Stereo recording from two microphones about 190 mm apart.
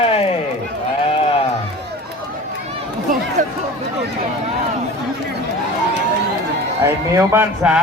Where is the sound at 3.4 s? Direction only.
45° right (ahead or behind).